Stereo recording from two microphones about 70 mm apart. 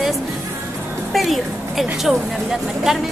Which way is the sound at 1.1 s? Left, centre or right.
Centre.